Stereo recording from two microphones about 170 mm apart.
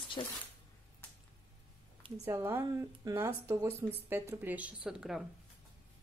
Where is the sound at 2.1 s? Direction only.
20° right (ahead or behind); by 5.3 s 5° right (ahead or behind).